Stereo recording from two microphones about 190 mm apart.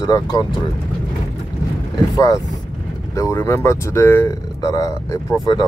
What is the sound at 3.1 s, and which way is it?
Speech, 15° left (ahead or behind).